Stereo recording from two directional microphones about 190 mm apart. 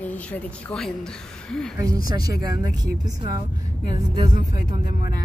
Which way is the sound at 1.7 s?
20° right (ahead or behind).